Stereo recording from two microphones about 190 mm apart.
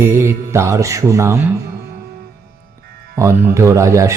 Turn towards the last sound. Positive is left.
turn(degrees=-15)  # may be behind; listen again after turning